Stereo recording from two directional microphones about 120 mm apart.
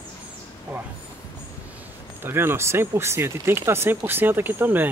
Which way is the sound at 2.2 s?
20° right (ahead or behind).